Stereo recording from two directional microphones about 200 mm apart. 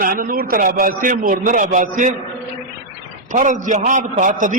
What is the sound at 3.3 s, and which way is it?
A man's voice, 40° right (ahead or behind).